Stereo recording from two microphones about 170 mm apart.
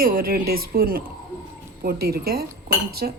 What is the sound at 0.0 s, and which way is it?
Speech, 60° right (ahead or behind).